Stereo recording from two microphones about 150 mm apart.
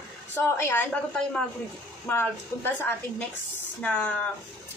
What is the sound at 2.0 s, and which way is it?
Speech, 15° left (ahead or behind).